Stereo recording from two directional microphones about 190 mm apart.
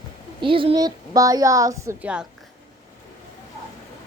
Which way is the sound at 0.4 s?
25° right (ahead or behind).